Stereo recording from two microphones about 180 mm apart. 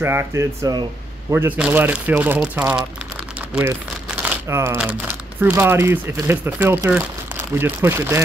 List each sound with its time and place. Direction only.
0.0 s speech: 15° right (ahead or behind)